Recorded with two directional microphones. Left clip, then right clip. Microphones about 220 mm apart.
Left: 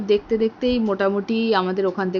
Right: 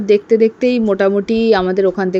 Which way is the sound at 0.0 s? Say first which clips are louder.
Right 8 dB; 25° right (ahead or behind).